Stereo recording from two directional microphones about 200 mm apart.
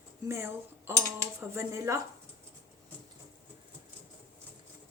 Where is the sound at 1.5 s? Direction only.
15° right (ahead or behind).